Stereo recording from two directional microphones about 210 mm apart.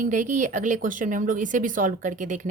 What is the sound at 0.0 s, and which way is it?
Speech, 40° right (ahead or behind).